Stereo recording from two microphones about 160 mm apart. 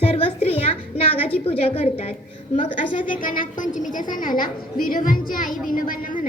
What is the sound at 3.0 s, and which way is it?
A woman's voice, 60° left (ahead or behind).